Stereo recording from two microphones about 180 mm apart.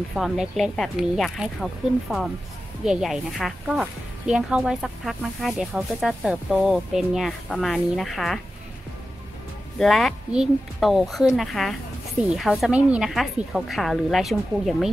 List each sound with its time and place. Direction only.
0.1 s speech: centre (ahead or behind)
9.8 s speech: centre (ahead or behind)